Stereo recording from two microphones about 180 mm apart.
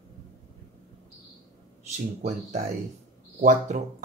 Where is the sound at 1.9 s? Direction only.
40° right (ahead or behind).